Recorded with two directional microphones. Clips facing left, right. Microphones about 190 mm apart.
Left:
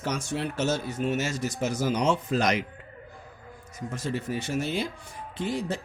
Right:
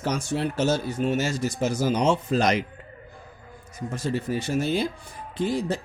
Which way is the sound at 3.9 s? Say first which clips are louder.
Right 4 dB; 35° right (ahead or behind).